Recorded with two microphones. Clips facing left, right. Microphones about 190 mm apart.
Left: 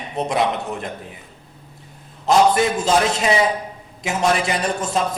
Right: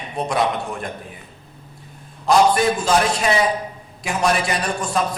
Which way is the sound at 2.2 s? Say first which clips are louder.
Even; 20° left (ahead or behind).